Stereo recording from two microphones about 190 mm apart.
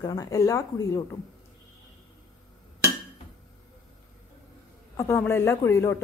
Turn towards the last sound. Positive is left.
turn(degrees=15)  # may be behind; listen again after turning